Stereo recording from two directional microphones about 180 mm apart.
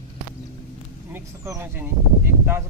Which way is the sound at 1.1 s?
15° right (ahead or behind).